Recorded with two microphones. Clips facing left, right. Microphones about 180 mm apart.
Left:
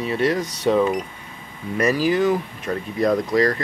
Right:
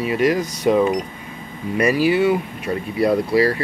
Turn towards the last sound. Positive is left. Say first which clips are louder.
# right 2 dB
turn(degrees=-10)  # may be behind; listen again after turning